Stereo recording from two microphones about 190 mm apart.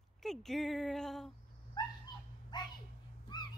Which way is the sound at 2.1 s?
20° left (ahead or behind).